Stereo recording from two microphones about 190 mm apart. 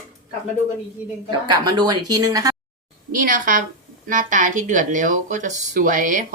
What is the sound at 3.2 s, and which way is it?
Speech, 45° right (ahead or behind).